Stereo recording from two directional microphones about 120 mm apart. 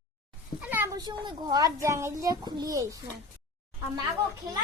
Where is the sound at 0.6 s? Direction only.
15° right (ahead or behind).